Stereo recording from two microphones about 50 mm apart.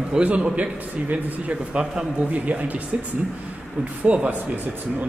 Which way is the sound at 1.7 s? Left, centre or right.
Centre.